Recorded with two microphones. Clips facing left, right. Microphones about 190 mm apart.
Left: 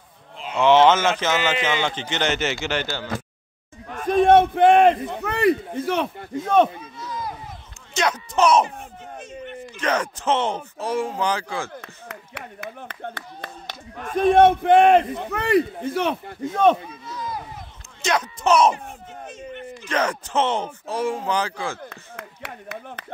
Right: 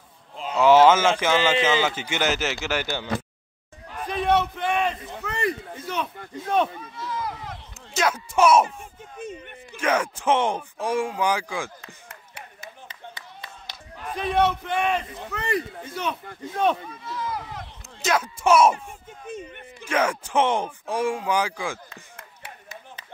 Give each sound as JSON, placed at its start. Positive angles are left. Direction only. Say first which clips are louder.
{"t": 0.6, "sound": "a man's voice", "louder": "even", "side_deg": -10}
{"t": 3.9, "sound": "a man's voice", "louder": "left 8 dB", "side_deg": 50}
{"t": 7.0, "sound": "a sound", "louder": "right 1 dB", "side_deg": 20}
{"t": 7.9, "sound": "a man's voice", "louder": "left 1 dB", "side_deg": -5}
{"t": 9.8, "sound": "a man's voice", "louder": "even", "side_deg": -10}
{"t": 11.8, "sound": "speech", "louder": "left 6 dB", "side_deg": 65}
{"t": 18.0, "sound": "a man's voice", "louder": "even", "side_deg": -5}
{"t": 19.8, "sound": "a man's voice", "louder": "right 1 dB", "side_deg": -10}
{"t": 21.8, "sound": "speech", "louder": "left 8 dB", "side_deg": 65}